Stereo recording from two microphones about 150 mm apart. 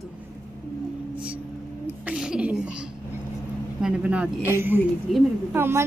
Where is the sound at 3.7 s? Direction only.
5° right (ahead or behind).